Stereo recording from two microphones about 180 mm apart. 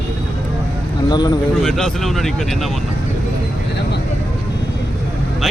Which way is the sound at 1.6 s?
5° left (ahead or behind).